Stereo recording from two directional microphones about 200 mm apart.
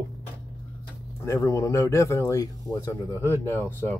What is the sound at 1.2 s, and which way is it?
Speech, 15° left (ahead or behind).